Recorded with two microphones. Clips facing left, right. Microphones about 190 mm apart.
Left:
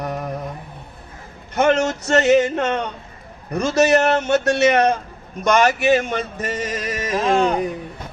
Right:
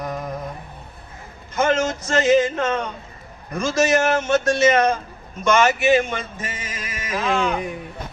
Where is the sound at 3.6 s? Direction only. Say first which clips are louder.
Left 3 dB; 65° left (ahead or behind).